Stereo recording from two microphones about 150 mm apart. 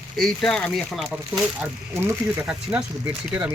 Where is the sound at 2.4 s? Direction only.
5° right (ahead or behind).